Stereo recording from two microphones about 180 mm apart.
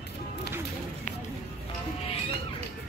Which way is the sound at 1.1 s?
45° left (ahead or behind).